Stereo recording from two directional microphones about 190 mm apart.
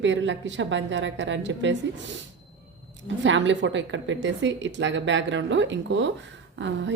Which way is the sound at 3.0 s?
75° right (ahead or behind).